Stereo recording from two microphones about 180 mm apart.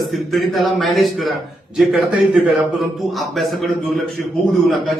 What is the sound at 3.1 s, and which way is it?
Speech, centre (ahead or behind).